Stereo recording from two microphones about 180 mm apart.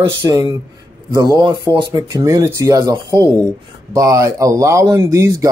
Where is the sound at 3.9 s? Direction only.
15° right (ahead or behind).